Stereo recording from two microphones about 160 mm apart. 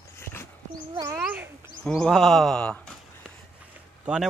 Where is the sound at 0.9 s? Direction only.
25° right (ahead or behind).